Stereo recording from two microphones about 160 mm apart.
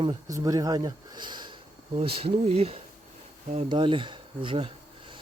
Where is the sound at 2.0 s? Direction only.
40° right (ahead or behind).